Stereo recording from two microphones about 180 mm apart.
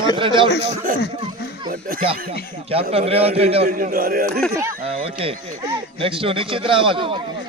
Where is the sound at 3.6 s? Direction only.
50° right (ahead or behind).